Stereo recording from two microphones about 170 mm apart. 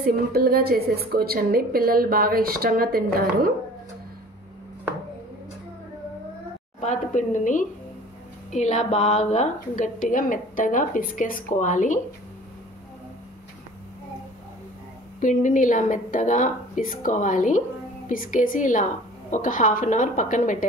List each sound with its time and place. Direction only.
0.3 s a woman's voice: 65° right (ahead or behind)
6.8 s a woman's voice: 45° left (ahead or behind)
15.1 s a woman's voice: 50° left (ahead or behind)